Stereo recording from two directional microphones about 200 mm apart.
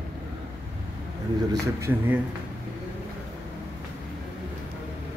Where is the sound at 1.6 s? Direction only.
15° right (ahead or behind).